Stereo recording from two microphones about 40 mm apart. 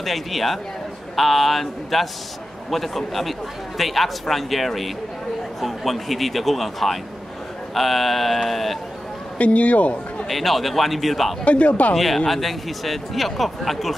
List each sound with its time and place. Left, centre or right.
0.0 s a man's voice: centre
9.4 s speech: left
10.2 s a man's voice: centre
11.4 s speech: left
11.9 s a man's voice: centre